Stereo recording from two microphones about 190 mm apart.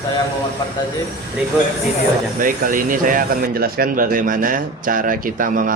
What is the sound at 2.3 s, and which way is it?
Speech, 45° right (ahead or behind).